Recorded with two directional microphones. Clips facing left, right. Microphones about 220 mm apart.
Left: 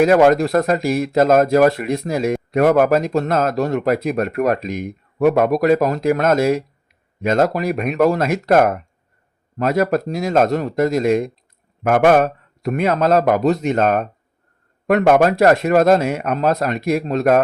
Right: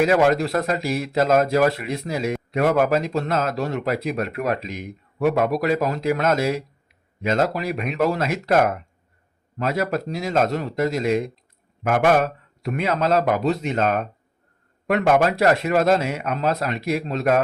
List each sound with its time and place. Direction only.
0.0 s speech: 50° left (ahead or behind)